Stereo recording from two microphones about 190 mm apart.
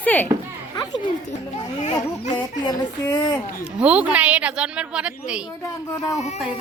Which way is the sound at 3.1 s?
20° left (ahead or behind).